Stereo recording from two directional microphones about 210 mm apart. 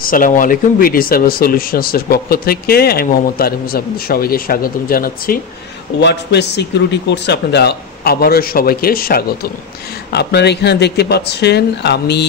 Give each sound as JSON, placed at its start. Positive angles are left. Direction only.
{"t": 0.0, "sound": "speech", "side_deg": 40}
{"t": 5.9, "sound": "speech", "side_deg": 55}